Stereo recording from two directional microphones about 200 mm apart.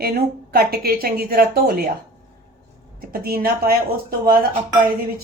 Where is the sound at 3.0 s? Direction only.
50° right (ahead or behind).